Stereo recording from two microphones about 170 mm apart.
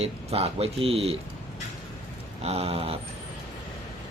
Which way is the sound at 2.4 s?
40° right (ahead or behind).